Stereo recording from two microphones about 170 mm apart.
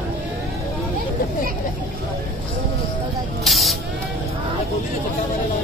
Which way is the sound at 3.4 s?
Centre (ahead or behind).